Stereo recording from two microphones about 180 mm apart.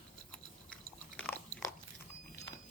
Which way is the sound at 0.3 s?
5° left (ahead or behind).